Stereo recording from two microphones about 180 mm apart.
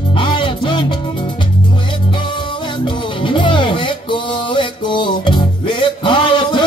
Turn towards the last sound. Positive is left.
turn(degrees=25)  # may be behind; listen again after turning